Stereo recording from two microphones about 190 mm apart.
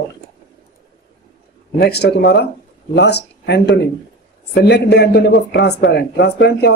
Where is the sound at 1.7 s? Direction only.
60° left (ahead or behind).